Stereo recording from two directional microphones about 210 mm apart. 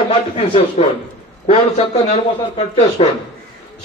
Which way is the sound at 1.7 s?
30° left (ahead or behind).